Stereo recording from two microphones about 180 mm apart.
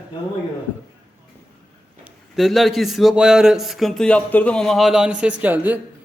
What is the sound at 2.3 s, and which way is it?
Speech, centre (ahead or behind).